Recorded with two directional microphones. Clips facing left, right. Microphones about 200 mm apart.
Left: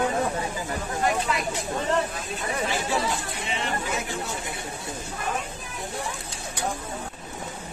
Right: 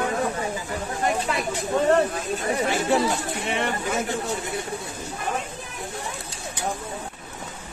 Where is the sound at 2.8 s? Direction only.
55° right (ahead or behind).